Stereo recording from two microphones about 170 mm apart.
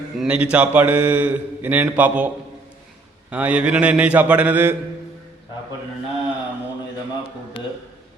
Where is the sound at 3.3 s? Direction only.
10° right (ahead or behind).